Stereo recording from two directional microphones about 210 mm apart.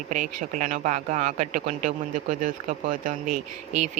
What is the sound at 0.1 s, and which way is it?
Speech, 35° right (ahead or behind).